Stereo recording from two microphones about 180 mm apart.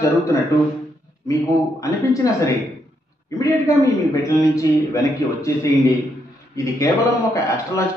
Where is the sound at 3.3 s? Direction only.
20° left (ahead or behind).